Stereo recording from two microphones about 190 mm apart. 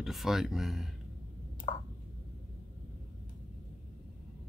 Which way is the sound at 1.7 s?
25° left (ahead or behind).